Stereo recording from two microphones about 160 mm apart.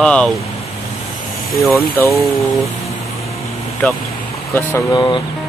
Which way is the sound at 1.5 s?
Centre (ahead or behind).